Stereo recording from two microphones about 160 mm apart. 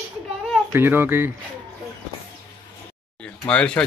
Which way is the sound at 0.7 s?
15° right (ahead or behind).